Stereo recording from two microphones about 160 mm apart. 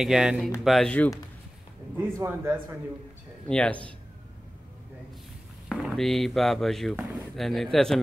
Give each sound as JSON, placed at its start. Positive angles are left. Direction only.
{"t": 0.0, "sound": "speech", "side_deg": -5}
{"t": 2.0, "sound": "a man's voice", "side_deg": -15}
{"t": 3.4, "sound": "speech", "side_deg": 5}
{"t": 5.7, "sound": "speech", "side_deg": 0}